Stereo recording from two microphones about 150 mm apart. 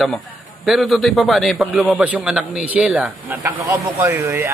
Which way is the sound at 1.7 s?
10° right (ahead or behind).